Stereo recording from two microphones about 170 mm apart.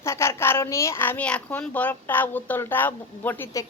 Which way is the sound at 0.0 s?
15° left (ahead or behind).